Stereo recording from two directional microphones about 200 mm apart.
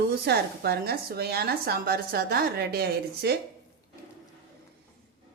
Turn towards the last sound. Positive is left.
turn(degrees=-50)  # may be behind; listen again after turning